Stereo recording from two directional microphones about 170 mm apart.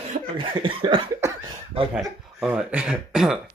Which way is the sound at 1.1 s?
20° right (ahead or behind).